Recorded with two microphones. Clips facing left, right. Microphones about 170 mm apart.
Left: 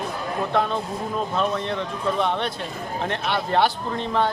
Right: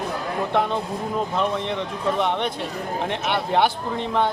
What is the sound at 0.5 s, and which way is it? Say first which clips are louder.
A man's voice: right 1 dB; 15° right (ahead or behind).